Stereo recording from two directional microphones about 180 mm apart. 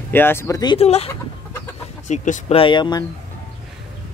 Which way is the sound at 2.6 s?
25° left (ahead or behind).